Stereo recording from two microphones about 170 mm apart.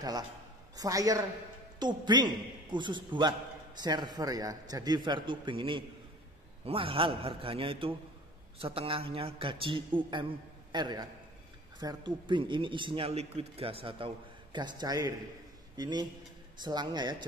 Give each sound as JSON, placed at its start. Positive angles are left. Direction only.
{"t": 0.7, "sound": "a man's voice", "side_deg": -20}